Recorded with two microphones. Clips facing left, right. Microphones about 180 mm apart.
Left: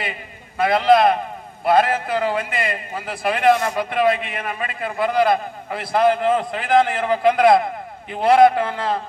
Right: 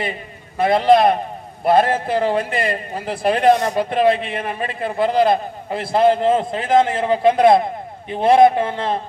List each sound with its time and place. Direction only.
0.0 s a man's voice: 30° right (ahead or behind)